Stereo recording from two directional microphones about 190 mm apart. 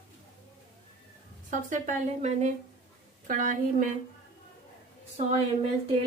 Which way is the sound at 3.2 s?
45° right (ahead or behind).